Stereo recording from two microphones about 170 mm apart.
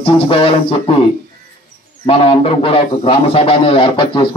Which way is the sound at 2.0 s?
35° left (ahead or behind).